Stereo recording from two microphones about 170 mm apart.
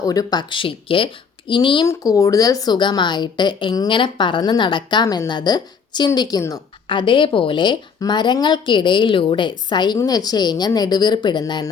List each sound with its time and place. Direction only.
0.0 s a woman's voice: 20° left (ahead or behind)